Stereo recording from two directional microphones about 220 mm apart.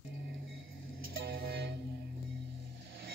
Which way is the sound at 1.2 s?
50° right (ahead or behind).